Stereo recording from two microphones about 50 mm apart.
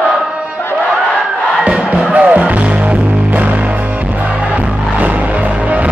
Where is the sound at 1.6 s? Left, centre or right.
Right.